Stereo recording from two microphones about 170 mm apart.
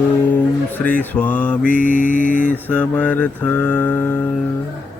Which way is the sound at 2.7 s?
10° left (ahead or behind).